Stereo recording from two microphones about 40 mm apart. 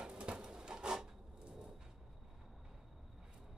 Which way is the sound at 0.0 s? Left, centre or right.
Right.